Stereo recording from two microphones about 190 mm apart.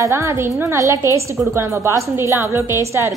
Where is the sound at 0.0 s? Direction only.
15° right (ahead or behind).